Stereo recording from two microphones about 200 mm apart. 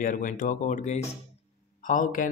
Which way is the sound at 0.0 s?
40° left (ahead or behind).